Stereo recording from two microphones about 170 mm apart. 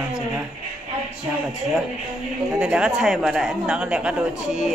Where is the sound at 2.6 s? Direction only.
5° right (ahead or behind).